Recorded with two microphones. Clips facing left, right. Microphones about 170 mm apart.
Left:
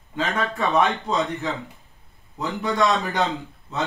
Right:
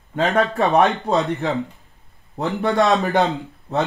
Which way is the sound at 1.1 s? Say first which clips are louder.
Right 5 dB; 60° right (ahead or behind).